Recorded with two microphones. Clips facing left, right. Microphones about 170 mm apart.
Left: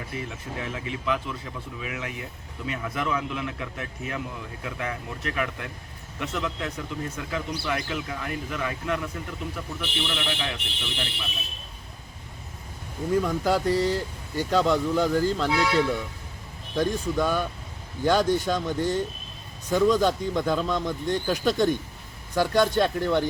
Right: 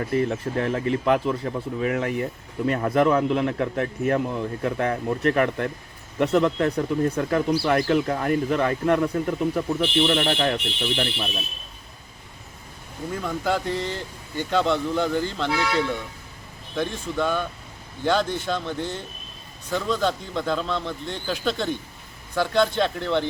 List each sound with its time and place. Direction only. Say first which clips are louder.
0.1 s speech: right 11 dB; 55° right (ahead or behind)
13.2 s speech: left 2 dB; 10° left (ahead or behind)